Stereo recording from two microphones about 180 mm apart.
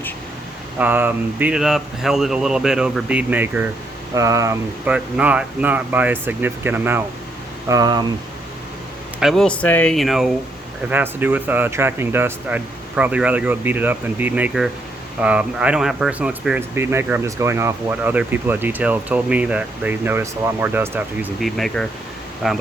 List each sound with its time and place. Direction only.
0.8 s speech: 10° right (ahead or behind)
4.9 s speech: 5° right (ahead or behind)
9.2 s speech: 5° left (ahead or behind)
21.5 s speech: centre (ahead or behind)